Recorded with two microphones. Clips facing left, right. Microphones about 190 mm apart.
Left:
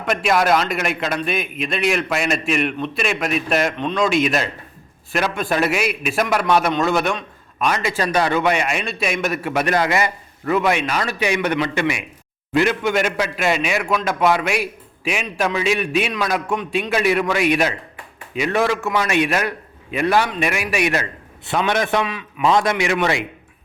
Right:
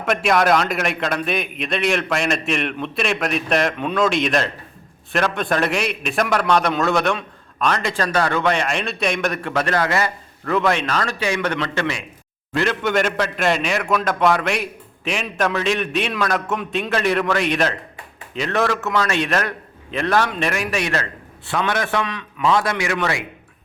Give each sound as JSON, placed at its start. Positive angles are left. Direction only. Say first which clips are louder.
{"t": 0.0, "sound": "a man's voice", "louder": "right 1 dB", "side_deg": 0}